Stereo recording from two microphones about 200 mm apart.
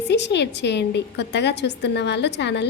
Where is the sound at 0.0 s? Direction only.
60° left (ahead or behind).